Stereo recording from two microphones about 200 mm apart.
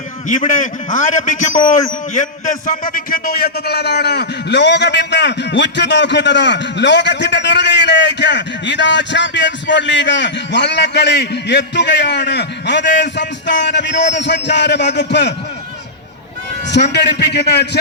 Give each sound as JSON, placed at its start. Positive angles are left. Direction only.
{"t": 0.3, "sound": "a man's voice", "side_deg": 40}
{"t": 16.7, "sound": "a man's voice", "side_deg": 60}